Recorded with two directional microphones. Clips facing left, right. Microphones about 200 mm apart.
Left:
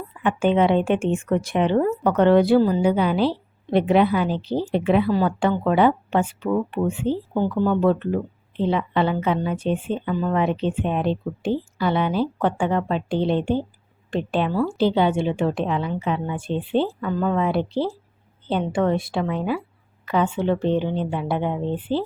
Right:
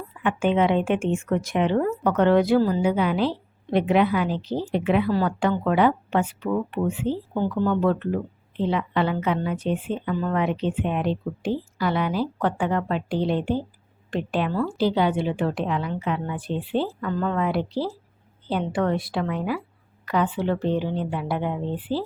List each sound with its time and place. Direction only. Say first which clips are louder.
0.2 s a woman's voice: left 2 dB; 35° left (ahead or behind)
2.6 s a woman's voice: left 3 dB; 20° left (ahead or behind)
2.8 s a woman's voice: left 2 dB; 30° left (ahead or behind)
17.0 s speech: left 3 dB; 15° left (ahead or behind)
17.3 s a woman's voice: left 3 dB; 25° left (ahead or behind)